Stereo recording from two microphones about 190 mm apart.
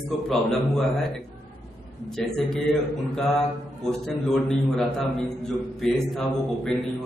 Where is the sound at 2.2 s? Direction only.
5° left (ahead or behind).